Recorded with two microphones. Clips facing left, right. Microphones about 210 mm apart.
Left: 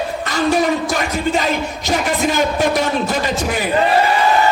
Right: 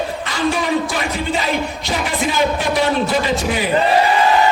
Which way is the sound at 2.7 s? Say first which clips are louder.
Right 1 dB; 45° left (ahead or behind).